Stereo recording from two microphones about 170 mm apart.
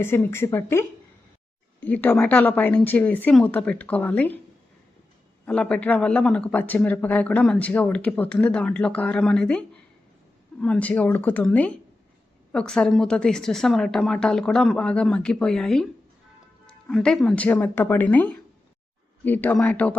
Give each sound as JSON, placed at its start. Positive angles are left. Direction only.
{"t": 0.0, "sound": "a man's voice", "side_deg": 15}
{"t": 5.5, "sound": "a man's voice", "side_deg": 5}
{"t": 16.9, "sound": "a man's voice", "side_deg": 5}